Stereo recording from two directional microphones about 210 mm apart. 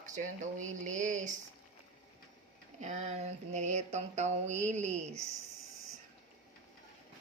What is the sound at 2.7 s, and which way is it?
Mantra, 35° right (ahead or behind).